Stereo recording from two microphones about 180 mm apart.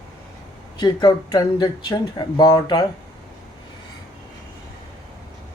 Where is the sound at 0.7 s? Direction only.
25° left (ahead or behind).